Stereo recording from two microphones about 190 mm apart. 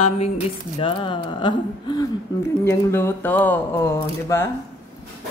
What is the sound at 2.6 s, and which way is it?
Speech, 15° left (ahead or behind).